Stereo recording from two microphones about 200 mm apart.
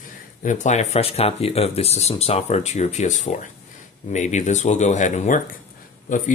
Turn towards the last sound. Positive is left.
turn(degrees=40)  # may be behind; listen again after turning